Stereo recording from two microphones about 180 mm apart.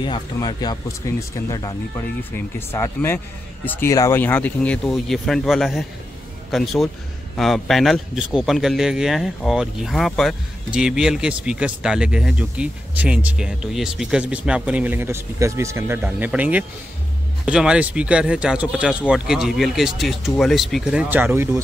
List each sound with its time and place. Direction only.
0.0 s speech: 25° left (ahead or behind); by 21.5 s 10° right (ahead or behind)